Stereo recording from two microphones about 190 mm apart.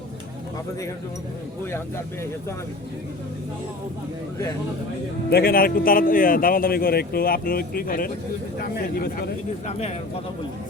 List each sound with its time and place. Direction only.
5.3 s speech: 55° left (ahead or behind)